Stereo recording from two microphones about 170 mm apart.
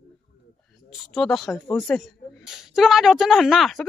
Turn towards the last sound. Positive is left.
turn(degrees=0)  # may be behind; listen again after turning